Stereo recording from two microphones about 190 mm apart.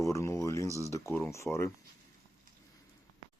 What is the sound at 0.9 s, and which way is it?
Speech, 15° left (ahead or behind).